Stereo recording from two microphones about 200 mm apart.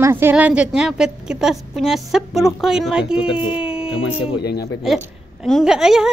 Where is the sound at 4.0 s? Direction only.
55° left (ahead or behind).